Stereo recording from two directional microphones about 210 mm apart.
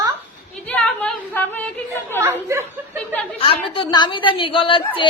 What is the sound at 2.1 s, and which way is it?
Chatter, 10° right (ahead or behind).